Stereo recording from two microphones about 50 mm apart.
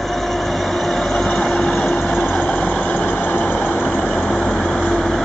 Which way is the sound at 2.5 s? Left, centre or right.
Centre.